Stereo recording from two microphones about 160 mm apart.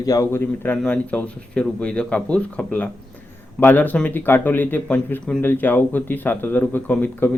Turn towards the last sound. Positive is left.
turn(degrees=10)  # may be behind; listen again after turning